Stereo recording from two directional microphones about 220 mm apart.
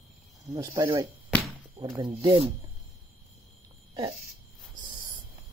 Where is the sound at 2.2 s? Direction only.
25° right (ahead or behind).